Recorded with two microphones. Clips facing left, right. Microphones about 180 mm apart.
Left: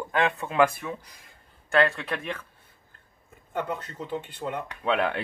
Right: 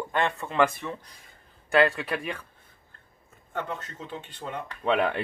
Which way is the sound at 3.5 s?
10° left (ahead or behind).